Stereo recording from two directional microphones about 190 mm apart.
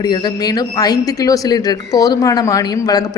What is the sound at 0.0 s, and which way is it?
A woman's voice, 20° left (ahead or behind).